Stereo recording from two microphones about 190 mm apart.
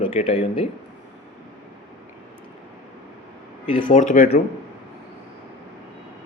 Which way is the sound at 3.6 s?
25° left (ahead or behind).